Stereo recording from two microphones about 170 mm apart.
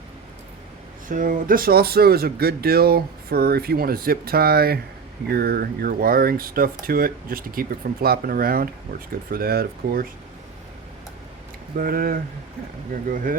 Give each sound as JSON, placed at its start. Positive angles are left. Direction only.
{"t": 1.0, "sound": "speech", "side_deg": -50}
{"t": 11.8, "sound": "speech", "side_deg": -55}